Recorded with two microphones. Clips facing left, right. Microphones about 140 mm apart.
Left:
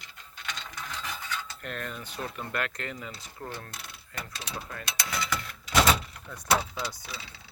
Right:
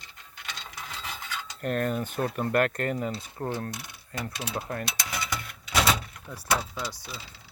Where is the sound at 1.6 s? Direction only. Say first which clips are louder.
Right 10 dB; 45° right (ahead or behind).